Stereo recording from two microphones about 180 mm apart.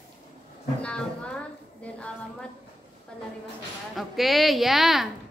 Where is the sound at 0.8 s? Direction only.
5° left (ahead or behind).